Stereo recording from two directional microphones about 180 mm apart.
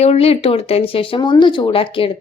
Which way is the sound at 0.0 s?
35° left (ahead or behind).